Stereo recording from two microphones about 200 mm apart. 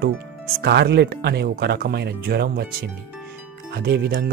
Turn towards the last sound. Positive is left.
turn(degrees=-55)  # may be behind; listen again after turning